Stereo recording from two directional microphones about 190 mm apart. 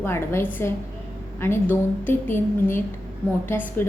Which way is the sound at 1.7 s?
10° left (ahead or behind).